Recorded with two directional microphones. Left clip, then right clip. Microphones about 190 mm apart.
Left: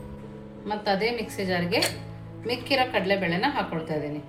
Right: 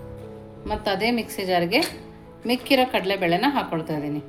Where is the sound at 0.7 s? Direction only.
50° right (ahead or behind).